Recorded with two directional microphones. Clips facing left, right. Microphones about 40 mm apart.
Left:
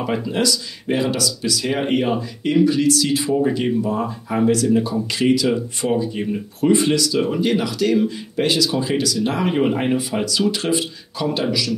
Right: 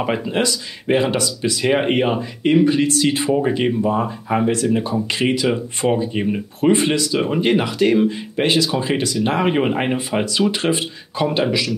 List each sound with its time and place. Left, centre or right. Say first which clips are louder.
0.0 s speech: right 1 dB; right